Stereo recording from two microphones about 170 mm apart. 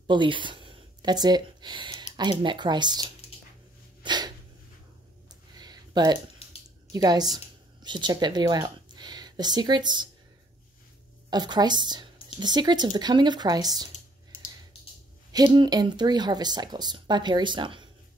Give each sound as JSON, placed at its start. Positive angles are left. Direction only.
{"t": 0.0, "sound": "speech", "side_deg": -30}
{"t": 4.0, "sound": "a sound", "side_deg": -25}
{"t": 5.6, "sound": "a sound", "side_deg": -25}
{"t": 6.9, "sound": "speech", "side_deg": -25}
{"t": 11.2, "sound": "speech", "side_deg": -25}
{"t": 15.3, "sound": "speech", "side_deg": -25}